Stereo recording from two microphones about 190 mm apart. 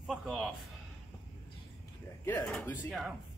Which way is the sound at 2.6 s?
Centre (ahead or behind).